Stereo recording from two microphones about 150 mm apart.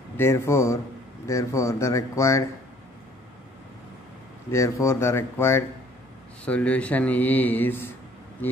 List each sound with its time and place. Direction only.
0.2 s speech: 15° left (ahead or behind)
4.5 s speech: 20° left (ahead or behind)